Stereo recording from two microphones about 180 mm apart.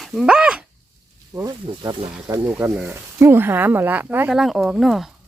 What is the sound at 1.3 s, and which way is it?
Speech, 20° right (ahead or behind).